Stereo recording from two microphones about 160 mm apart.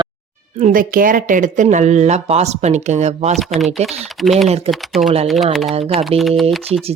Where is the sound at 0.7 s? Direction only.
60° right (ahead or behind); by 3.4 s 45° right (ahead or behind).